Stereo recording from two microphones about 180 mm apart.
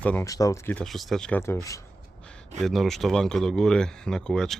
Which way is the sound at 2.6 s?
Centre (ahead or behind).